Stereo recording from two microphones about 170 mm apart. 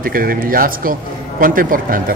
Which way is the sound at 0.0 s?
60° right (ahead or behind).